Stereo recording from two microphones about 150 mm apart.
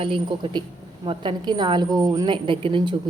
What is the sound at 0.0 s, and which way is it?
A woman's voice, 35° right (ahead or behind).